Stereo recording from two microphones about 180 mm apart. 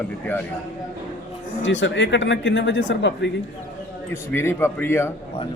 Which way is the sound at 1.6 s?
90° left.